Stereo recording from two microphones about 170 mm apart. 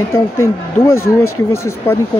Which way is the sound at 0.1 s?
15° left (ahead or behind).